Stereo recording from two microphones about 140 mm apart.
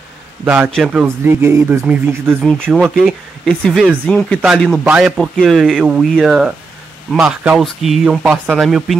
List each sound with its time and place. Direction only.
0.7 s speech: 5° right (ahead or behind)
1.0 s speech: 15° right (ahead or behind)
2.4 s speech: 5° left (ahead or behind)
5.1 s speech: centre (ahead or behind)